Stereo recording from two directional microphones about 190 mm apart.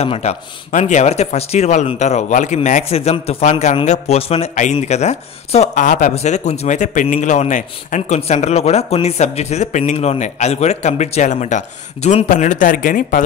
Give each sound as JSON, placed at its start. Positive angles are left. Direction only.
{"t": 0.0, "sound": "speech", "side_deg": 35}